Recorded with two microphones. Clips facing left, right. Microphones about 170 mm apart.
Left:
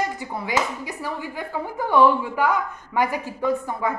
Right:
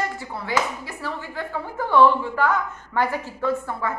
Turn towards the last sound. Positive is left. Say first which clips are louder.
# left 1 dB
turn(degrees=15)  # may be behind; listen again after turning